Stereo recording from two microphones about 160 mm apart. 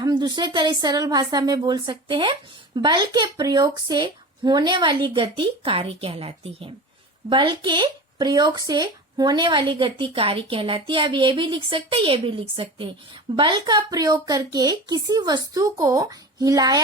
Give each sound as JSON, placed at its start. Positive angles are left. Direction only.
{"t": 0.0, "sound": "speech", "side_deg": -25}